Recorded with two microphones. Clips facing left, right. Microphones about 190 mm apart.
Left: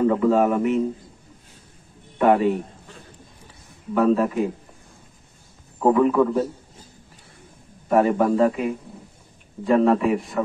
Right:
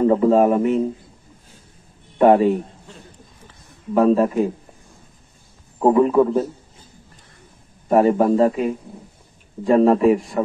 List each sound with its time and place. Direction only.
0.0 s a man's voice: 30° right (ahead or behind)
2.1 s a man's voice: 35° right (ahead or behind)
3.9 s a man's voice: 35° right (ahead or behind)
5.8 s a man's voice: 30° right (ahead or behind)
7.9 s a man's voice: 30° right (ahead or behind)